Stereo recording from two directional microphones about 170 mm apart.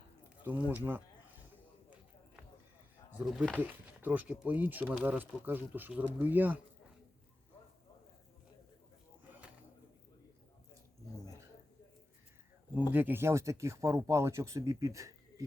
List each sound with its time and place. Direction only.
0.7 s speech: 10° right (ahead or behind)
3.1 s speech: 5° right (ahead or behind)
12.9 s speech: 10° right (ahead or behind)